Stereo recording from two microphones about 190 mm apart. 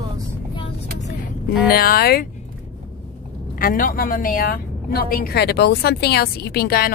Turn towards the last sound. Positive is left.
turn(degrees=55)  # may be behind; listen again after turning